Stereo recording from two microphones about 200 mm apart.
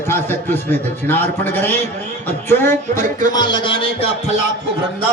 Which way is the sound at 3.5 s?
25° left (ahead or behind).